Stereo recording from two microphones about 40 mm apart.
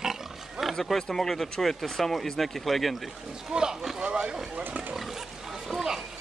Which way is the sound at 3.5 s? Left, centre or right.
Centre.